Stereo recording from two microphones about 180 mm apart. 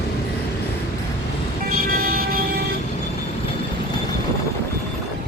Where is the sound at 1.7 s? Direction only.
50° right (ahead or behind).